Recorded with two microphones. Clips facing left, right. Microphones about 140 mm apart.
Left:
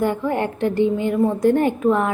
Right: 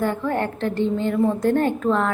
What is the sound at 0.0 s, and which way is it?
A woman's voice, 15° left (ahead or behind).